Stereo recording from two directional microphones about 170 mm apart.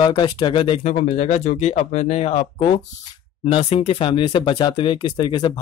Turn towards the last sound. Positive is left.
turn(degrees=25)  # may be behind; listen again after turning